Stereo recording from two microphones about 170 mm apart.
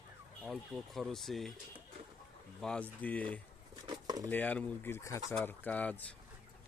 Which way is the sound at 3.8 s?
25° right (ahead or behind).